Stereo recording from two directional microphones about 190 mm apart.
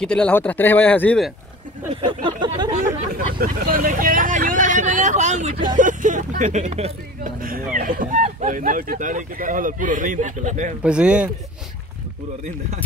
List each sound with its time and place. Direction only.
0.0 s speech: 5° left (ahead or behind)
2.0 s a sound: 25° right (ahead or behind)
2.8 s speech: 45° right (ahead or behind)
10.8 s speech: 5° right (ahead or behind)